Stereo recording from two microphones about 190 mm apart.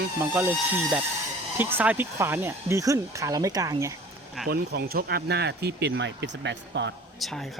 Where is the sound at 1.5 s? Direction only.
10° right (ahead or behind).